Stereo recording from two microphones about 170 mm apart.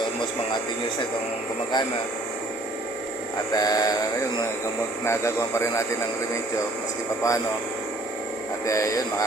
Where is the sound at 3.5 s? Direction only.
20° left (ahead or behind).